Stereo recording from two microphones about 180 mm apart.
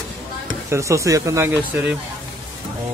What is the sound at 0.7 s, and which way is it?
Speech, 15° right (ahead or behind).